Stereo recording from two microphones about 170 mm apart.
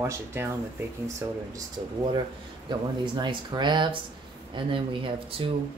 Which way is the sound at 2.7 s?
25° right (ahead or behind).